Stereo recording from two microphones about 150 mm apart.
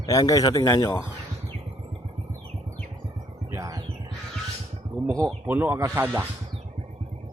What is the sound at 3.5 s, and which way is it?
Music, 25° right (ahead or behind).